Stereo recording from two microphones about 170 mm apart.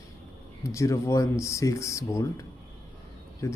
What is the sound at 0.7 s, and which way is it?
Speech, 15° left (ahead or behind).